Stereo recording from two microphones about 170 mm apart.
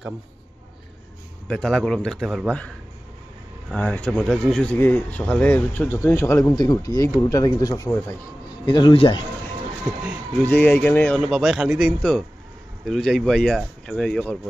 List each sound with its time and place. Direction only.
1.5 s speech: 5° left (ahead or behind)
3.7 s speech: 5° left (ahead or behind)
8.6 s speech: 30° left (ahead or behind)
10.5 s speech: 10° left (ahead or behind)
11.2 s speech: centre (ahead or behind)